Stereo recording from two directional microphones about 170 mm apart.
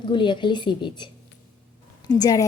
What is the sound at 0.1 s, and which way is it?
A woman's voice, 30° left (ahead or behind).